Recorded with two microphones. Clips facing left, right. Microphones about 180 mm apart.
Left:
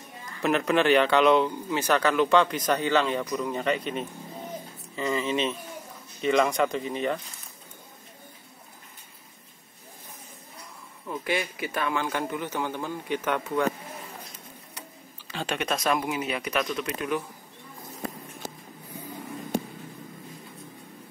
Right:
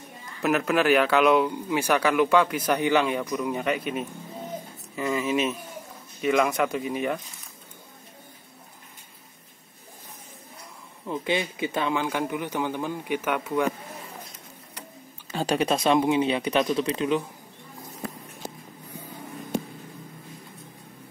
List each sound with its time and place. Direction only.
0.4 s speech: 5° right (ahead or behind)
11.1 s speech: 20° right (ahead or behind)
15.3 s speech: 35° right (ahead or behind)